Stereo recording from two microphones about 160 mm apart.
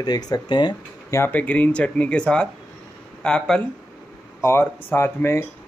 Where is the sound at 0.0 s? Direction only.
25° left (ahead or behind).